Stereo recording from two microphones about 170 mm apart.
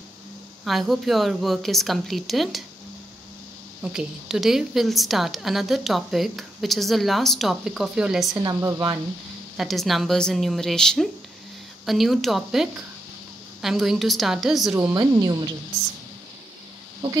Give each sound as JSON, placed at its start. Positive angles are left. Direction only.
{"t": 0.7, "sound": "a woman's voice", "side_deg": 0}
{"t": 3.8, "sound": "a woman's voice", "side_deg": -5}
{"t": 8.4, "sound": "speech", "side_deg": -20}
{"t": 9.6, "sound": "a woman's voice", "side_deg": 0}
{"t": 15.0, "sound": "speech", "side_deg": -25}